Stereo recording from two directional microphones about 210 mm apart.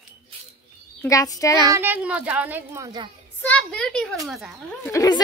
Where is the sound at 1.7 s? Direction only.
10° right (ahead or behind).